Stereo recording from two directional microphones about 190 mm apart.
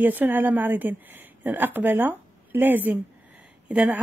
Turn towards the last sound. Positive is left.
turn(degrees=-5)  # may be behind; listen again after turning